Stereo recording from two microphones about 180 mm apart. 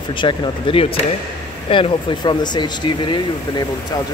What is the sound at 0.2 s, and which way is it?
Speech, 30° left (ahead or behind).